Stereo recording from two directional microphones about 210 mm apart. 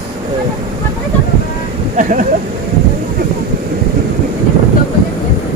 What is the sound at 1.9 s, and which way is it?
Speech, 40° right (ahead or behind).